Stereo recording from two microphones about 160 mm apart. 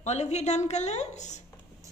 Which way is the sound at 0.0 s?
45° left (ahead or behind).